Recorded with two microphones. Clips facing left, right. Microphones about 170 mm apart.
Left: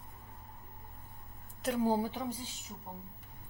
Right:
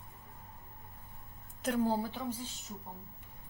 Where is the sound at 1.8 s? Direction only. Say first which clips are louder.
Left 3 dB; 15° left (ahead or behind).